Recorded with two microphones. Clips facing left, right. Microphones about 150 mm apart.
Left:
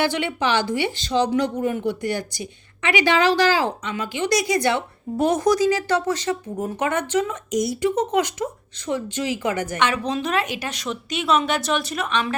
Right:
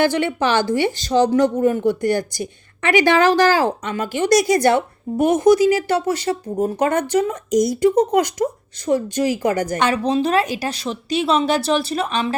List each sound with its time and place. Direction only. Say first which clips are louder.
0.0 s speech: right 4 dB; 45° right (ahead or behind)
5.1 s speech: right 5 dB; 20° right (ahead or behind)